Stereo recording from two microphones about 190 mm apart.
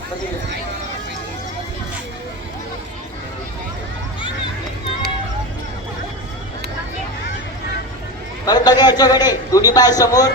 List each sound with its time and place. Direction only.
8.4 s a man's voice: 20° left (ahead or behind)